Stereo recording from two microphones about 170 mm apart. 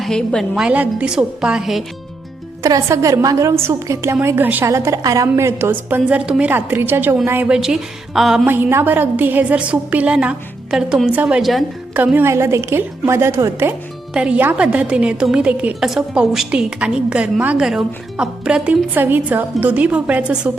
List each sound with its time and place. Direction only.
0.0 s a woman's voice: 5° left (ahead or behind)
2.6 s a woman's voice: 20° right (ahead or behind); by 8.4 s centre (ahead or behind)
8.4 s a woman's voice: 10° right (ahead or behind)